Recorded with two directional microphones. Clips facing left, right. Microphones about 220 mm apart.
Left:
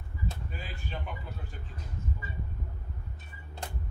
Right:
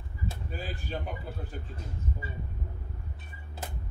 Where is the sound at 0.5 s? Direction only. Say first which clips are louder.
Right 5 dB; 40° right (ahead or behind).